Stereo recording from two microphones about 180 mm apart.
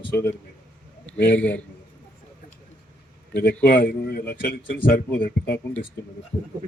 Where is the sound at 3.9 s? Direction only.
60° left (ahead or behind).